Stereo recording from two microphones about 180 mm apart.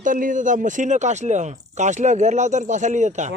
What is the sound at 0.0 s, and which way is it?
Speech, 45° right (ahead or behind).